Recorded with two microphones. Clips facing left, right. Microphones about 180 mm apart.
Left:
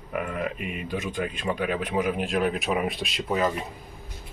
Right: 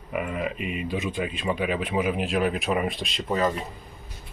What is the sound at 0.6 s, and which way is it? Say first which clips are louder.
Speech: right 2 dB; 50° left (ahead or behind).